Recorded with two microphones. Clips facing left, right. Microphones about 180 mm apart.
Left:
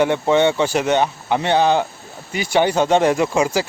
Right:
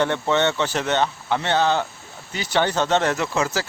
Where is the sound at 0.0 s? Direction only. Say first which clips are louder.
Left 5 dB; 10° left (ahead or behind).